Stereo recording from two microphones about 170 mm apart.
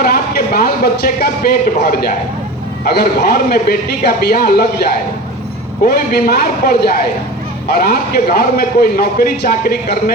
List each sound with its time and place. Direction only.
0.0 s a man's voice: 65° left (ahead or behind)